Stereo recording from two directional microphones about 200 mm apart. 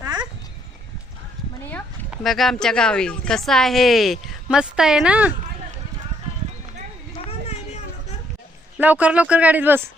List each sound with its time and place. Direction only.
2.0 s speech: centre (ahead or behind)
7.3 s a sound: 30° left (ahead or behind)
8.8 s speech: 5° right (ahead or behind)